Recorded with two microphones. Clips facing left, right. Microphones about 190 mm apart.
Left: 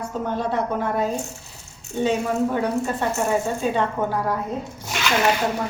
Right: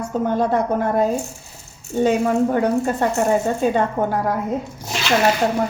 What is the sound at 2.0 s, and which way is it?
A woman's voice, 45° right (ahead or behind).